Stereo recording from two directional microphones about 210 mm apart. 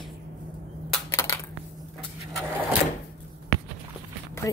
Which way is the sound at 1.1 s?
15° left (ahead or behind).